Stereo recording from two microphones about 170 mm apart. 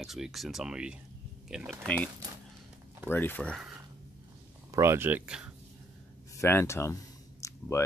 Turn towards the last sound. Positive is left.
turn(degrees=20)  # may be behind; listen again after turning